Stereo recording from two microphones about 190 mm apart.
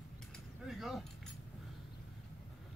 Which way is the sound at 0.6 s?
Centre (ahead or behind).